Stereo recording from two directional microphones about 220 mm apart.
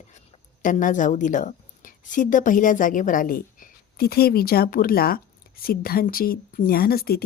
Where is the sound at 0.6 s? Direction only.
35° left (ahead or behind).